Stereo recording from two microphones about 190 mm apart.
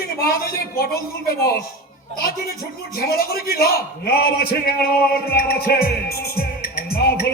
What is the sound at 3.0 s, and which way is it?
A man's voice, 55° left (ahead or behind).